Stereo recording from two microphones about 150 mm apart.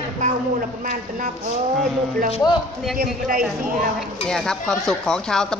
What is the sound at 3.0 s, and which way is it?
Speech, 70° right (ahead or behind).